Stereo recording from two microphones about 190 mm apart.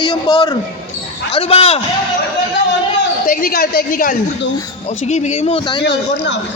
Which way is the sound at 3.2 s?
50° left (ahead or behind).